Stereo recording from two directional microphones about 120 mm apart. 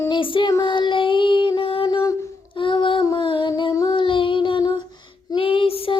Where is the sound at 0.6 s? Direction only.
40° left (ahead or behind).